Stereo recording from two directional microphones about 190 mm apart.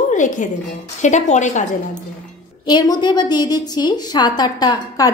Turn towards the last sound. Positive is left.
turn(degrees=20)  # may be behind; listen again after turning